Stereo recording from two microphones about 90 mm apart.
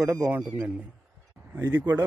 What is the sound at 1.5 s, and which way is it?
Speech, 25° right (ahead or behind).